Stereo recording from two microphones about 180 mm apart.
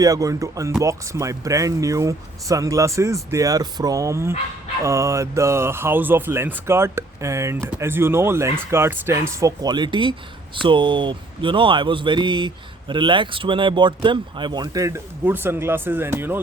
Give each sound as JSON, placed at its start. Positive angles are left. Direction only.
{"t": 0.0, "sound": "speech", "side_deg": -20}